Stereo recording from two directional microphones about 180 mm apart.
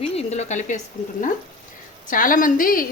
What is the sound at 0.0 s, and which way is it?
Speech, 35° left (ahead or behind).